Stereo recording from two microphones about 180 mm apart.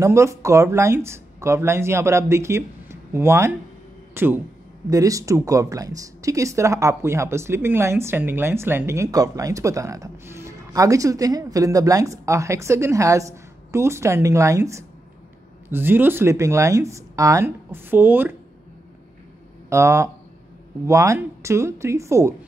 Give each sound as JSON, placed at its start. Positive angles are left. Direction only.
{"t": 0.0, "sound": "speech", "side_deg": -15}
{"t": 19.7, "sound": "speech", "side_deg": -15}